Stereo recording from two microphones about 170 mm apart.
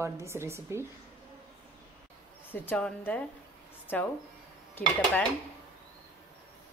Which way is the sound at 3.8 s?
10° left (ahead or behind).